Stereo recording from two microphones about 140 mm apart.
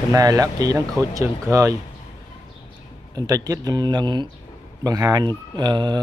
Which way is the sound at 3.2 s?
25° right (ahead or behind).